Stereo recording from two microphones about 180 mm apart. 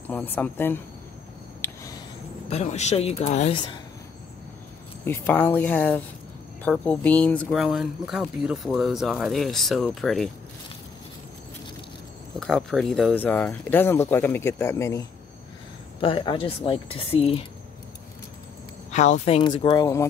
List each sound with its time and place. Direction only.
0.1 s speech: 10° left (ahead or behind)
2.5 s speech: 40° left (ahead or behind)
5.0 s speech: 10° left (ahead or behind)
12.4 s speech: 5° left (ahead or behind)
16.0 s speech: 30° left (ahead or behind)
18.9 s speech: 40° left (ahead or behind)
19.5 s speech: 20° left (ahead or behind)